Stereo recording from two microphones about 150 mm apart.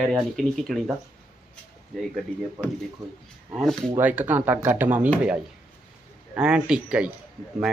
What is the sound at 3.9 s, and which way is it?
Speech, 10° right (ahead or behind).